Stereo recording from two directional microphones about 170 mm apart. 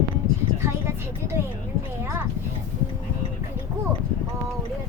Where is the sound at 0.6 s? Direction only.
15° right (ahead or behind).